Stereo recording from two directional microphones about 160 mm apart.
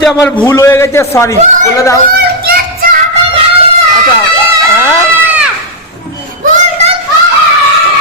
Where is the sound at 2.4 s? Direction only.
65° right (ahead or behind).